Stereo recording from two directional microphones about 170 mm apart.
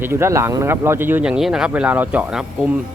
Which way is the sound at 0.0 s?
15° right (ahead or behind).